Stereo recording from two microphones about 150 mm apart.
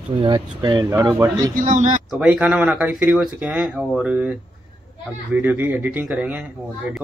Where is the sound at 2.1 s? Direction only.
5° right (ahead or behind).